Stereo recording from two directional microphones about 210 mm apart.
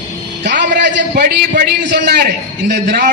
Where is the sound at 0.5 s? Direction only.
40° right (ahead or behind).